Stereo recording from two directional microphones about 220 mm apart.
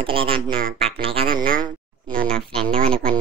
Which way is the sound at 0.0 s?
25° right (ahead or behind).